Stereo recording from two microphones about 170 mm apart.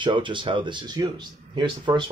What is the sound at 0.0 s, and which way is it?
Speech, 30° right (ahead or behind).